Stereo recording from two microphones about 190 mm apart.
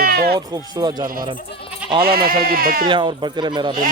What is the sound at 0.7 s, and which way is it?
Speech, 20° right (ahead or behind).